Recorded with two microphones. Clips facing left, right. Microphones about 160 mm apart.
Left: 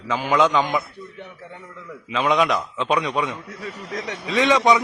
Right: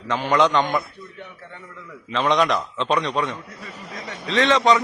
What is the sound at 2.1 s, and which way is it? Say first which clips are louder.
A man's voice: even; 5° left (ahead or behind).